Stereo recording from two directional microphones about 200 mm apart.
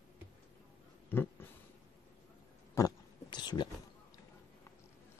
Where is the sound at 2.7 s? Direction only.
20° left (ahead or behind).